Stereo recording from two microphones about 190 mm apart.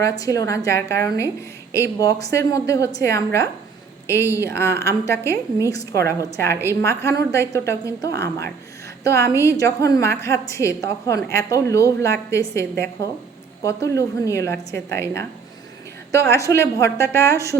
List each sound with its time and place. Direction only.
0.0 s a woman's voice: 15° left (ahead or behind)